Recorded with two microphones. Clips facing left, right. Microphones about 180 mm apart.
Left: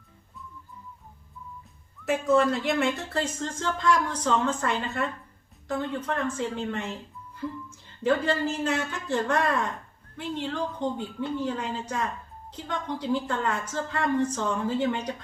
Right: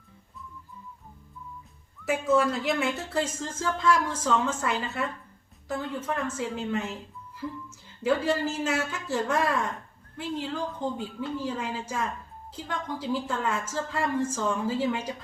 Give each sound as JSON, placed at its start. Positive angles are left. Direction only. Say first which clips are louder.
{"t": 2.0, "sound": "speech", "louder": "left 2 dB", "side_deg": 0}
{"t": 8.0, "sound": "speech", "louder": "left 1 dB", "side_deg": -5}